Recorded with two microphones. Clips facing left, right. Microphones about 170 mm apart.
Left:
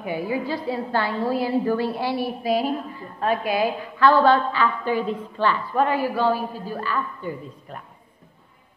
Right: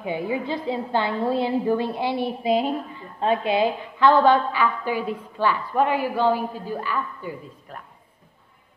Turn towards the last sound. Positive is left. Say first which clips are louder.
# left 2 dB
turn(degrees=-5)  # may be behind; listen again after turning